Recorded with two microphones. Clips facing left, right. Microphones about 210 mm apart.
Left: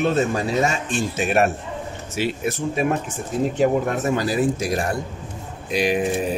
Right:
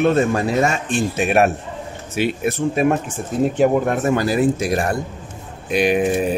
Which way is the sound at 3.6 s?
55° right (ahead or behind).